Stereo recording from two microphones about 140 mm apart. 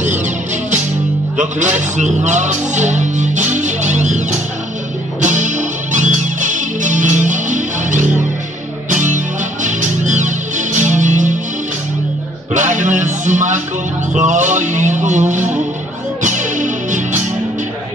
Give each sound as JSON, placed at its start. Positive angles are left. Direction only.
{"t": 1.3, "sound": "music", "side_deg": -60}
{"t": 12.5, "sound": "music", "side_deg": -60}